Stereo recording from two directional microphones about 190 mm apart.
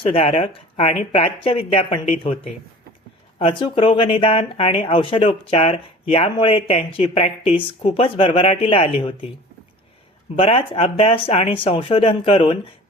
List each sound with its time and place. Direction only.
0.0 s speech: 30° left (ahead or behind)
10.3 s speech: 30° left (ahead or behind)